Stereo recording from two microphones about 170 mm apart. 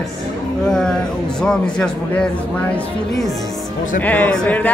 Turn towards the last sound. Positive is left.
turn(degrees=10)  # may be behind; listen again after turning